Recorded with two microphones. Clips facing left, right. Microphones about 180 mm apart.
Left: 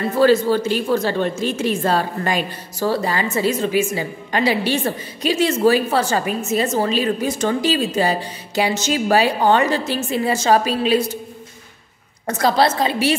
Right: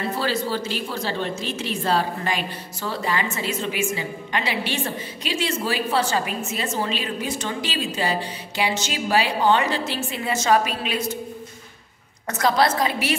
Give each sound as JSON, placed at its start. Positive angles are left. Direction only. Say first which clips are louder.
{"t": 0.2, "sound": "a woman's voice", "louder": "left 14 dB", "side_deg": 50}
{"t": 12.3, "sound": "a woman's voice", "louder": "left 3 dB", "side_deg": 30}